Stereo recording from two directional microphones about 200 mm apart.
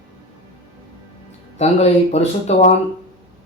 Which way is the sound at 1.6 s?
30° left (ahead or behind).